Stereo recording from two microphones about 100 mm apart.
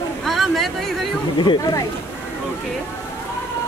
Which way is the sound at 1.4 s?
50° left (ahead or behind).